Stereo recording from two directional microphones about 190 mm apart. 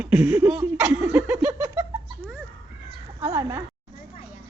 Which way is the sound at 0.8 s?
15° right (ahead or behind).